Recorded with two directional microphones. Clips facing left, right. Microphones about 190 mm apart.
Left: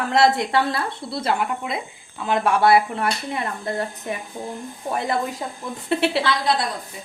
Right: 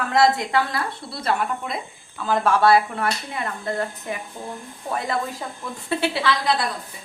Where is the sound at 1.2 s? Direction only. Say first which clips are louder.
Even; 25° left (ahead or behind).